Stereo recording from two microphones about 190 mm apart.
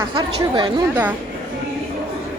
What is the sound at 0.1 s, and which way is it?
Speech, 25° right (ahead or behind).